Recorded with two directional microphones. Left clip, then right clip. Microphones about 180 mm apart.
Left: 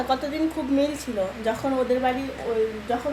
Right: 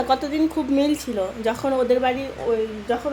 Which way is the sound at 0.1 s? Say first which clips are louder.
Right 4 dB; 50° right (ahead or behind).